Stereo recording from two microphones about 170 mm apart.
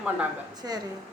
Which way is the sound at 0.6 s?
25° right (ahead or behind).